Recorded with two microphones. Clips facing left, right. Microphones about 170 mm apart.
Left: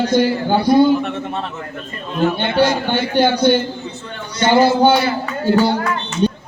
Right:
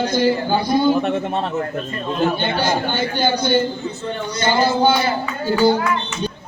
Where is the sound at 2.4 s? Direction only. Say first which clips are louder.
Left 4 dB; 70° left (ahead or behind).